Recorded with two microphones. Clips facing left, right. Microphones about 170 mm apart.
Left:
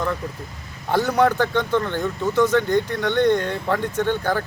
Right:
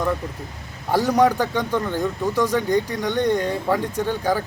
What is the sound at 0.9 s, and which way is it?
Speech, 10° right (ahead or behind).